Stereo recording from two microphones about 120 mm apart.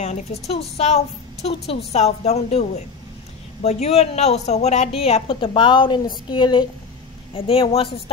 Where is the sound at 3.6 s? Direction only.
65° left (ahead or behind); by 6.6 s 40° left (ahead or behind).